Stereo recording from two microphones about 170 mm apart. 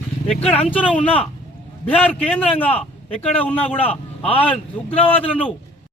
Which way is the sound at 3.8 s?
35° left (ahead or behind).